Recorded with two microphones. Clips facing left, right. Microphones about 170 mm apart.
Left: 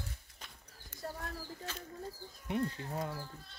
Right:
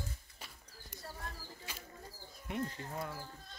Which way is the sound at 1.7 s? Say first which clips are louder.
Left 3 dB; 10° right (ahead or behind).